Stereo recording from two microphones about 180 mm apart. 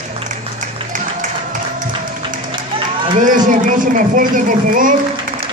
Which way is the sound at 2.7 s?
30° right (ahead or behind).